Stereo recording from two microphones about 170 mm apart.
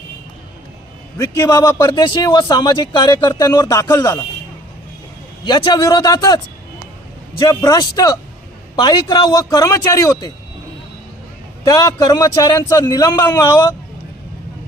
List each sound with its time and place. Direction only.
1.2 s a man's voice: 20° left (ahead or behind)
5.5 s a man's voice: 25° left (ahead or behind)
11.6 s a man's voice: 20° left (ahead or behind)